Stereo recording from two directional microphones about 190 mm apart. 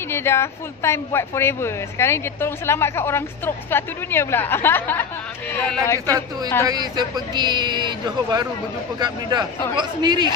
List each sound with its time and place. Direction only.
0.1 s a woman's voice: 15° left (ahead or behind)
6.0 s speech: 20° right (ahead or behind)